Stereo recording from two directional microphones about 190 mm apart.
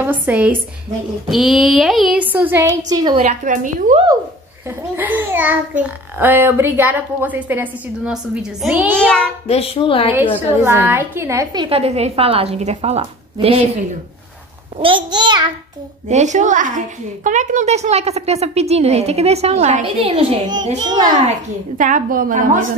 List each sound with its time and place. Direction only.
0.0 s a child's voice: 10° right (ahead or behind)
3.3 s a woman's voice: 40° right (ahead or behind)
4.6 s a child's voice: 10° right (ahead or behind)
8.9 s a woman's voice: 5° left (ahead or behind)
9.5 s a woman's voice: 30° left (ahead or behind)
10.6 s a child's voice: 10° right (ahead or behind)
11.7 s a woman's voice: 35° right (ahead or behind)
14.8 s a child's voice: 25° right (ahead or behind)
16.1 s a woman's voice: 40° right (ahead or behind); by 21.1 s 20° right (ahead or behind)
21.7 s a woman's voice: 45° right (ahead or behind)